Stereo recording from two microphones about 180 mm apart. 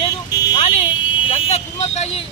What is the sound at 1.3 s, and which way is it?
Speech, 35° left (ahead or behind).